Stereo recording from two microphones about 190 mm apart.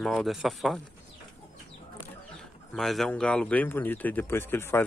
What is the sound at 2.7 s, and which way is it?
Speech, centre (ahead or behind).